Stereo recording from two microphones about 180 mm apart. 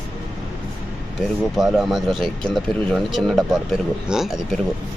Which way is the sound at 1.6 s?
Centre (ahead or behind).